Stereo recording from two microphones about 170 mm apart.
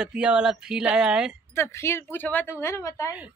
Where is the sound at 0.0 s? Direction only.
5° right (ahead or behind).